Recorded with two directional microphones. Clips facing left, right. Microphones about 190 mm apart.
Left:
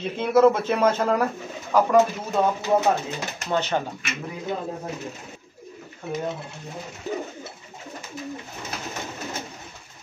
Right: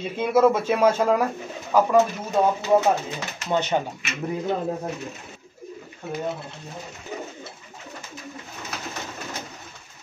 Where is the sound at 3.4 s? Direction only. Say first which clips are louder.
Right 2 dB; 15° right (ahead or behind).